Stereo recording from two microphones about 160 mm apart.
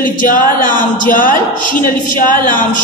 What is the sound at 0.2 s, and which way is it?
Speech, 55° left (ahead or behind).